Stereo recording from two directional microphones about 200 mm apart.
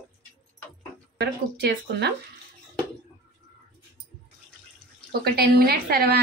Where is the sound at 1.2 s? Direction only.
55° right (ahead or behind).